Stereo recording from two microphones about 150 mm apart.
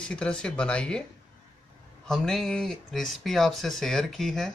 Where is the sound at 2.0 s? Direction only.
5° left (ahead or behind).